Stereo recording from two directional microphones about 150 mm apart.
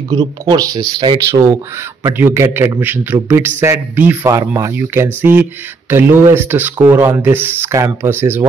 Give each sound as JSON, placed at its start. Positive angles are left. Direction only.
{"t": 0.1, "sound": "speech", "side_deg": -25}